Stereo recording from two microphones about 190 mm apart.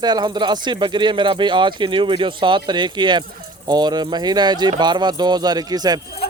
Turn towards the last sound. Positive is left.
turn(degrees=-20)  # may be behind; listen again after turning